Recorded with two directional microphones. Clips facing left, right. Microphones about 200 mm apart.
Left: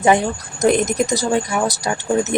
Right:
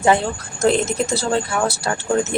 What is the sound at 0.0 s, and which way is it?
Speech, 15° left (ahead or behind).